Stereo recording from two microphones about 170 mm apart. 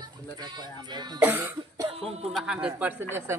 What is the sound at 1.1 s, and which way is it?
Speech, 10° right (ahead or behind).